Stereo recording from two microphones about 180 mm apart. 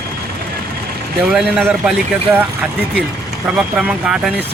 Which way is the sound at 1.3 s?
5° right (ahead or behind).